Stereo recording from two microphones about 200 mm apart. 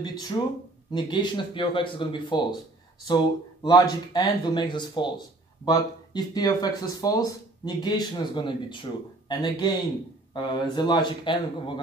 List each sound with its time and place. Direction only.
0.0 s speech: 20° left (ahead or behind)
3.6 s speech: 20° left (ahead or behind)